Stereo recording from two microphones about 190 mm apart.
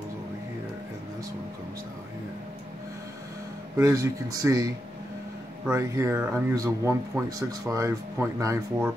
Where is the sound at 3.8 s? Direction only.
15° right (ahead or behind).